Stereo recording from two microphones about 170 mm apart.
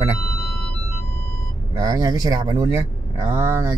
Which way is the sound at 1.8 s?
20° right (ahead or behind).